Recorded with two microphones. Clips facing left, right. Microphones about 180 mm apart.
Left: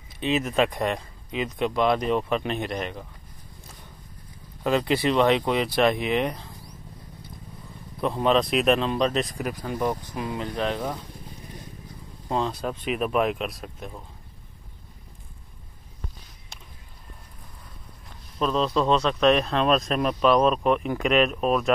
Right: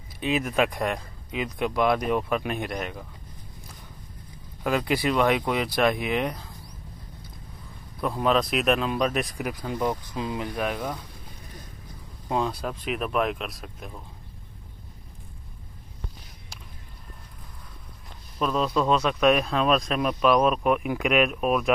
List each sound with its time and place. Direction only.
0.2 s speech: 10° right (ahead or behind)
4.6 s speech: 10° right (ahead or behind)
8.1 s speech: centre (ahead or behind)
9.8 s speech: 15° left (ahead or behind)
10.1 s speech: 20° right (ahead or behind)
12.3 s speech: 5° right (ahead or behind)
18.4 s speech: 5° right (ahead or behind)